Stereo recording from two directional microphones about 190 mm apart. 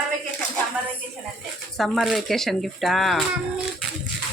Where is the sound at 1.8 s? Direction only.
Centre (ahead or behind).